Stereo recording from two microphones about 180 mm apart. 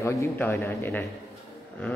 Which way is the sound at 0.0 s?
15° left (ahead or behind).